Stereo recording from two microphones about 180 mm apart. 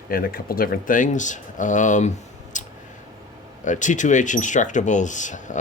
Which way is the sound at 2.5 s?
45° left (ahead or behind).